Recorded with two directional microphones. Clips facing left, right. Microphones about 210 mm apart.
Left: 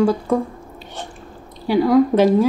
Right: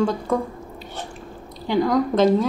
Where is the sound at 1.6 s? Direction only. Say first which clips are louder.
Left 5 dB; 10° left (ahead or behind).